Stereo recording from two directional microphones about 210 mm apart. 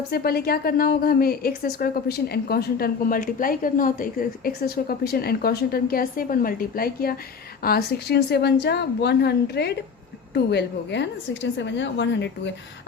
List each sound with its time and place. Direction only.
0.1 s a woman's voice: 45° left (ahead or behind)